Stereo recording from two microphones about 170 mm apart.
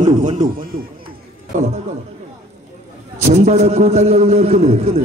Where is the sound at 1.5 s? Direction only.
45° right (ahead or behind).